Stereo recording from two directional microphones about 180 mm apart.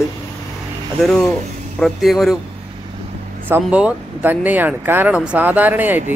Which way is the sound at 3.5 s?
5° right (ahead or behind).